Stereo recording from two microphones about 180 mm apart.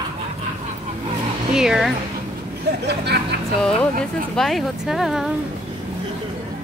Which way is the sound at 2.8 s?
65° right (ahead or behind).